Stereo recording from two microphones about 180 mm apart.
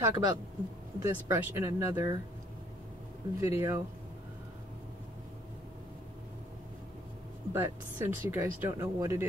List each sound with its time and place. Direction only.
0.0 s speech: 20° right (ahead or behind)
3.3 s speech: 15° right (ahead or behind)
7.5 s speech: 15° right (ahead or behind)